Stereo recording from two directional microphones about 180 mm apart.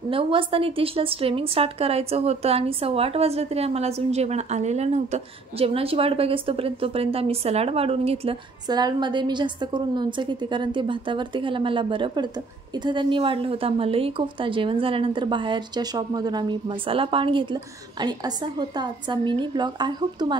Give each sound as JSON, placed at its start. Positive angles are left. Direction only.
{"t": 0.1, "sound": "a woman's voice", "side_deg": -30}